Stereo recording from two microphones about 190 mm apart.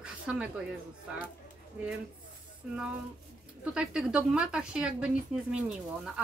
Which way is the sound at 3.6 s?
5° right (ahead or behind).